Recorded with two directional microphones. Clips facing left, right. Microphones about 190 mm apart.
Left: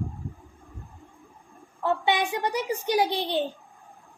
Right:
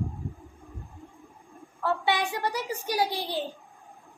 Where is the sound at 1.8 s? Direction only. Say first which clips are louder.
Left 2 dB; 20° left (ahead or behind).